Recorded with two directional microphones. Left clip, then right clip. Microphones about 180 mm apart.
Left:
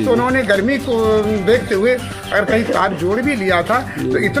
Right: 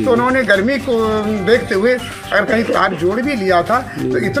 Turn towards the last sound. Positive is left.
turn(degrees=15)  # may be behind; listen again after turning